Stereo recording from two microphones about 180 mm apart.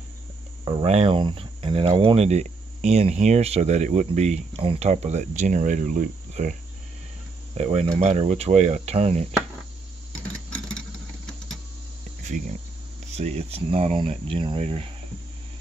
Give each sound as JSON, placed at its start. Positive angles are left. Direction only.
{"t": 0.7, "sound": "speech", "side_deg": -30}
{"t": 7.5, "sound": "speech", "side_deg": -35}
{"t": 12.2, "sound": "speech", "side_deg": -45}